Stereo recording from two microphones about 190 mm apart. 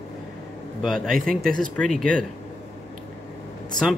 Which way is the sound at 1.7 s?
5° left (ahead or behind).